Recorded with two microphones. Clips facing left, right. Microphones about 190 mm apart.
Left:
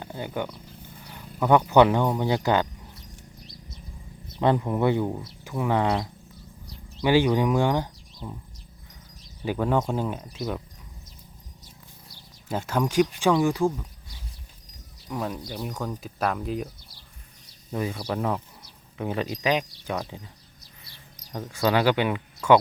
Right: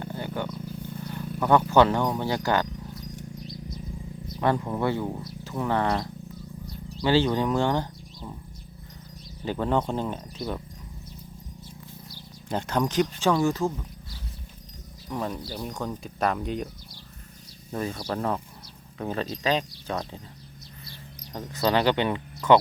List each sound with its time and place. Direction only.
0.0 s wild animals: 15° left (ahead or behind)
1.4 s speech: 15° left (ahead or behind)
4.3 s speech: 20° left (ahead or behind)
7.0 s speech: 15° left (ahead or behind)
9.4 s speech: 10° left (ahead or behind)
12.1 s speech: 5° left (ahead or behind)
15.1 s speech: 5° left (ahead or behind)
17.7 s speech: 10° left (ahead or behind)
21.3 s speech: 10° left (ahead or behind)